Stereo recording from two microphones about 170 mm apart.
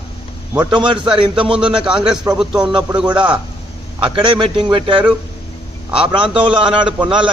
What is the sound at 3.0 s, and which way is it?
A man's voice, 30° right (ahead or behind).